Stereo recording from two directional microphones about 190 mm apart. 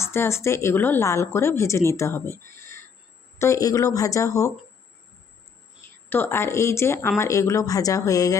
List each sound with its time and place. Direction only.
0.0 s a woman's voice: 15° left (ahead or behind)
2.5 s a sound: 15° left (ahead or behind)
3.3 s a woman's voice: 15° left (ahead or behind)
6.1 s a woman's voice: 10° left (ahead or behind)